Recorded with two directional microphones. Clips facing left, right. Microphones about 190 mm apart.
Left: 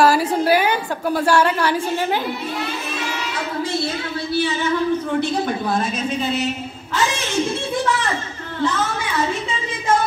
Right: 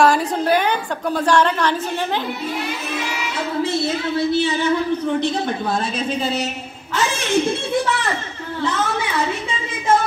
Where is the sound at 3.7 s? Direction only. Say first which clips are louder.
Right 3 dB; 25° right (ahead or behind).